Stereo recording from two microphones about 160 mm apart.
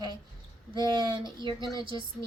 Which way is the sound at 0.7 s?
30° right (ahead or behind).